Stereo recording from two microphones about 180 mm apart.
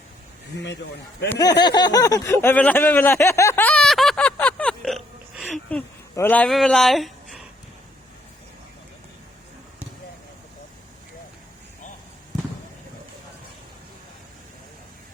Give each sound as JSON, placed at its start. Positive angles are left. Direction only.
{"t": 0.6, "sound": "speech", "side_deg": 70}
{"t": 1.4, "sound": "speech", "side_deg": 25}